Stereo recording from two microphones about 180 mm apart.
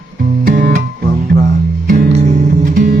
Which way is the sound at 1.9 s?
40° right (ahead or behind).